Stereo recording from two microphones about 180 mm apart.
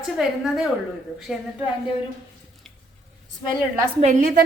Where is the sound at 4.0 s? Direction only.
45° right (ahead or behind).